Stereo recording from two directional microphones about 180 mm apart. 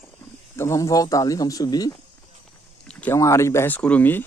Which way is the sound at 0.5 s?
15° left (ahead or behind).